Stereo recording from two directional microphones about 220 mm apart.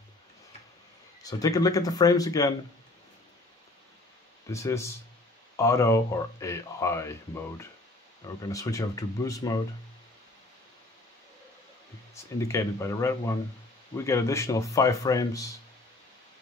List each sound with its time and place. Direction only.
1.2 s speech: 15° left (ahead or behind)
4.5 s speech: 15° left (ahead or behind)
12.1 s speech: 10° left (ahead or behind)